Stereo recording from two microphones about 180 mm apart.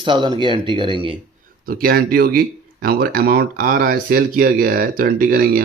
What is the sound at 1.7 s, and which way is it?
Speech, 55° right (ahead or behind).